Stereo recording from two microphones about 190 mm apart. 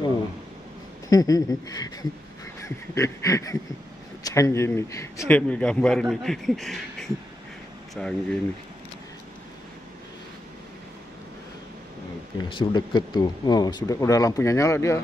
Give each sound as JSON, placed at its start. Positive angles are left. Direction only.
{"t": 1.0, "sound": "a man's voice", "side_deg": 20}
{"t": 12.4, "sound": "speech", "side_deg": 25}